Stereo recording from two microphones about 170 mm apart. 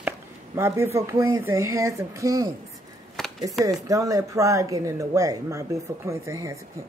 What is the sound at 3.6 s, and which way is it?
Speech, 20° right (ahead or behind).